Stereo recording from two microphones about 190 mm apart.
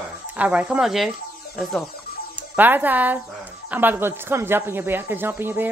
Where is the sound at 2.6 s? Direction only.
10° right (ahead or behind).